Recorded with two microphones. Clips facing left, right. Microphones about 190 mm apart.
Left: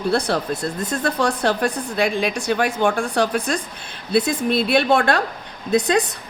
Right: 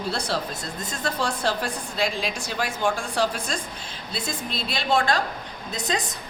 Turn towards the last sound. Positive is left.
turn(degrees=65)  # may be behind; listen again after turning